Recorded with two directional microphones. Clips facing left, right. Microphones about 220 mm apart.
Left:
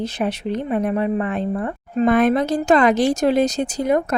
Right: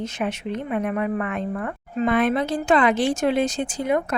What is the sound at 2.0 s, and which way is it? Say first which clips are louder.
A woman's voice: left 4 dB; 45° left (ahead or behind).